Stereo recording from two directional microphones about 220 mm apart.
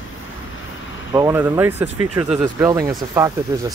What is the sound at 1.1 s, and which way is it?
Speech, 10° right (ahead or behind).